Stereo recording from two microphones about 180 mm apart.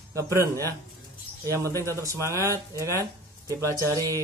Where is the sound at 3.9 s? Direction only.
20° right (ahead or behind).